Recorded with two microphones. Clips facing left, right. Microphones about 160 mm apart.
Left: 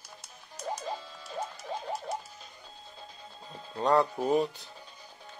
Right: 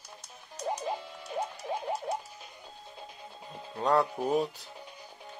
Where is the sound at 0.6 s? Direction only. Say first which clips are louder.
Right 3 dB; 15° right (ahead or behind).